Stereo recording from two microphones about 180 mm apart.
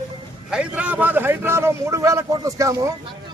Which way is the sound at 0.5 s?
5° right (ahead or behind).